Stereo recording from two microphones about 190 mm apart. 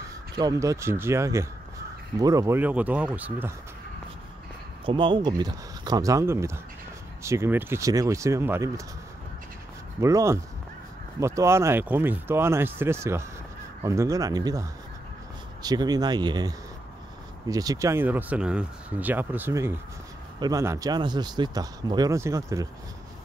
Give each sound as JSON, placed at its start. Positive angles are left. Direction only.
{"t": 0.4, "sound": "speech", "side_deg": -20}
{"t": 4.8, "sound": "speech", "side_deg": -25}
{"t": 9.9, "sound": "speech", "side_deg": -15}